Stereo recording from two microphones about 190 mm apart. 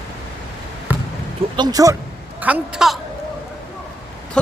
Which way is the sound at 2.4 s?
5° right (ahead or behind).